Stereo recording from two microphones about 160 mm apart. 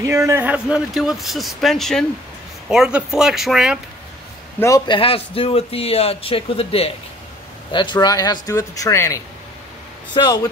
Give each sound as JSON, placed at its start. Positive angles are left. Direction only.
{"t": 0.0, "sound": "speech", "side_deg": -20}
{"t": 4.6, "sound": "speech", "side_deg": 20}